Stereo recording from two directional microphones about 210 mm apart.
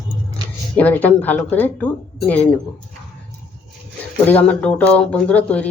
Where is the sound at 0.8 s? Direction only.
10° left (ahead or behind).